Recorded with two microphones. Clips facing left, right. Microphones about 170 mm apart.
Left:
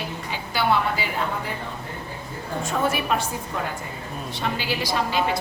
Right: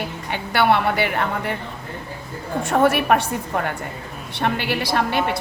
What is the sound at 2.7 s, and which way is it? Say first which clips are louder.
A woman's voice: right 7 dB; 65° right (ahead or behind).